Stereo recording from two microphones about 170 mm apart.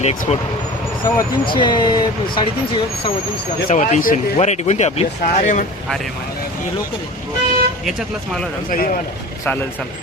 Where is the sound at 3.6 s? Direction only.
50° left (ahead or behind).